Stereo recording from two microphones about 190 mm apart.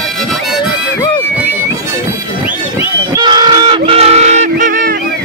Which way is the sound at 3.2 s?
20° right (ahead or behind).